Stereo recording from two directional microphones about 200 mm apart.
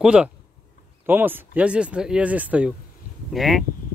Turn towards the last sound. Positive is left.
turn(degrees=0)  # may be behind; listen again after turning